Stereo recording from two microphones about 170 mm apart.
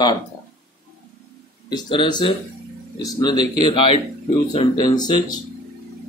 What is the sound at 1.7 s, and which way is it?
Speech, 25° left (ahead or behind).